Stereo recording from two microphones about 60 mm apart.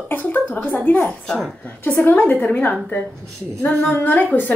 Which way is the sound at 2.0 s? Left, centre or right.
Left.